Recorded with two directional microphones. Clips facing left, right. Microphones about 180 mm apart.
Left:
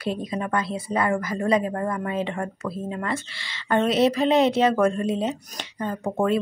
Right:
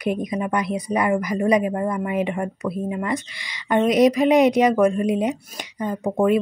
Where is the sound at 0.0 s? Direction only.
15° right (ahead or behind).